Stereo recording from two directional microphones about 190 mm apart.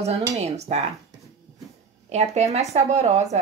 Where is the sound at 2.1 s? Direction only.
35° right (ahead or behind).